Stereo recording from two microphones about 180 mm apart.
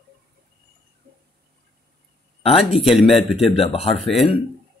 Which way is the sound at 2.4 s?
35° left (ahead or behind).